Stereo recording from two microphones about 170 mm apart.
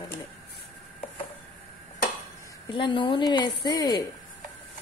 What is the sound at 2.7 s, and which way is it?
A woman's voice, 30° left (ahead or behind).